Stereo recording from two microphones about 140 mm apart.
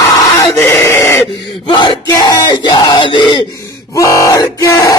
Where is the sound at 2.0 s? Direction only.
25° left (ahead or behind).